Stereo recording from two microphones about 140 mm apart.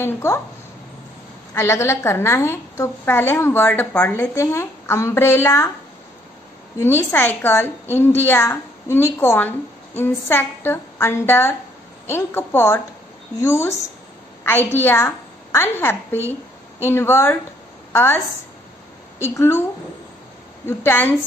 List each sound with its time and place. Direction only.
0.0 s a woman's voice: 20° left (ahead or behind)
1.5 s a woman's voice: 20° left (ahead or behind)
6.8 s a woman's voice: 15° left (ahead or behind)
20.6 s a woman's voice: 15° left (ahead or behind)